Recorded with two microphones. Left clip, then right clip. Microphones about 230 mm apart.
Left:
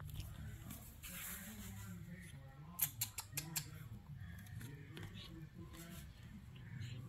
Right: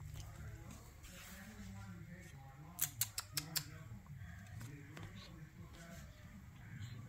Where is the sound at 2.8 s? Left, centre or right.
Centre.